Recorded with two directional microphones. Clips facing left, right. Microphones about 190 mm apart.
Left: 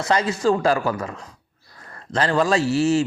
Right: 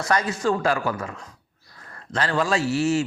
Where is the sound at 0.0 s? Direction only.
25° left (ahead or behind).